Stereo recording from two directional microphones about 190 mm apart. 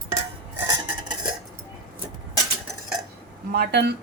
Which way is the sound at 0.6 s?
20° right (ahead or behind).